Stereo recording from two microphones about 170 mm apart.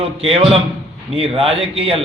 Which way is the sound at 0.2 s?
35° right (ahead or behind).